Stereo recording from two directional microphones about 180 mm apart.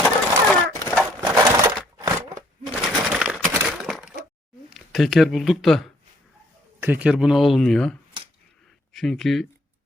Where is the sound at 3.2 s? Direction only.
5° right (ahead or behind).